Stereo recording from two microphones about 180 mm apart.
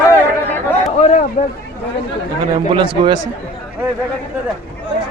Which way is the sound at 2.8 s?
25° right (ahead or behind).